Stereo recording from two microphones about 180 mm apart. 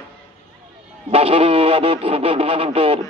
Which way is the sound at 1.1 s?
30° right (ahead or behind).